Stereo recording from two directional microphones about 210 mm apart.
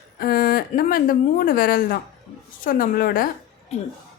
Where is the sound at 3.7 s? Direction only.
30° left (ahead or behind).